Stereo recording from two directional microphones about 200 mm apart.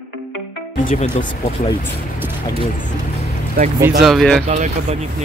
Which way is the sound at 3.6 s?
45° right (ahead or behind).